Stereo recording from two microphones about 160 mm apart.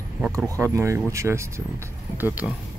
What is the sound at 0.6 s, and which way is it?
Speech, 15° right (ahead or behind).